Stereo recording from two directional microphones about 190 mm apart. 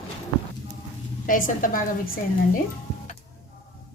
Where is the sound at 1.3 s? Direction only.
45° left (ahead or behind).